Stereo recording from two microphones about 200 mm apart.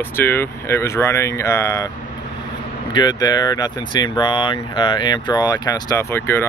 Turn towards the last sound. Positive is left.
turn(degrees=10)  # may be behind; listen again after turning